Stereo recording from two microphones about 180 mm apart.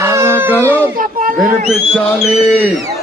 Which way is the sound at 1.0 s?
50° right (ahead or behind).